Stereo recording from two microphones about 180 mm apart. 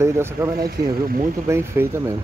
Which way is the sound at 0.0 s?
15° right (ahead or behind).